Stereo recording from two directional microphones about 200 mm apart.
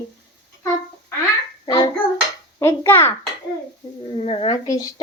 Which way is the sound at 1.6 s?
25° left (ahead or behind).